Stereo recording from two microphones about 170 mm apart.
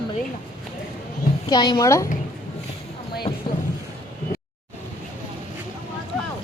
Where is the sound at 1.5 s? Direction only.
25° left (ahead or behind).